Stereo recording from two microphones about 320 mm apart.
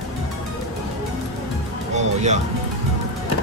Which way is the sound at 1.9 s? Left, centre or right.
Right.